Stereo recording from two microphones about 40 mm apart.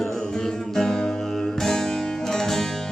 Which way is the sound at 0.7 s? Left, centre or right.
Centre.